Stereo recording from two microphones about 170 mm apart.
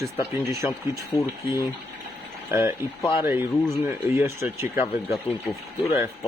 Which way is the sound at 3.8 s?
15° right (ahead or behind).